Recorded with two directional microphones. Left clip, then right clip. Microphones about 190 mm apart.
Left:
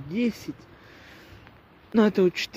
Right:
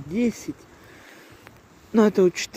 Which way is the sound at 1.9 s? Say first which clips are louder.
Right 3 dB; 5° left (ahead or behind).